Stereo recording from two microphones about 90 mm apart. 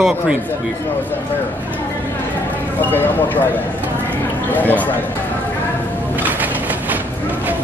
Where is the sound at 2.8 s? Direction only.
20° left (ahead or behind).